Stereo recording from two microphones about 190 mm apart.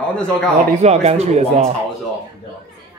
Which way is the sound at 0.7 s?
35° right (ahead or behind).